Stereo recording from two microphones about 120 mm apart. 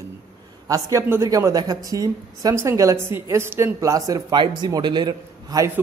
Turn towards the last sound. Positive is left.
turn(degrees=-35)  # may be behind; listen again after turning